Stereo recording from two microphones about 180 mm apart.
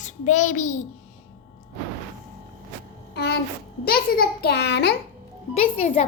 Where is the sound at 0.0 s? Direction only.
40° left (ahead or behind).